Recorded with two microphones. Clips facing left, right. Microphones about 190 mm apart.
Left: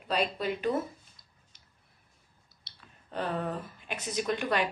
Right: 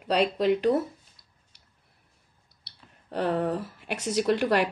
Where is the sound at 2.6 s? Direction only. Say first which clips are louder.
Right 6 dB; 70° right (ahead or behind).